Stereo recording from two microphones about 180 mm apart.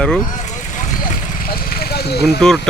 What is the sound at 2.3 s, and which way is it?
Speech, centre (ahead or behind).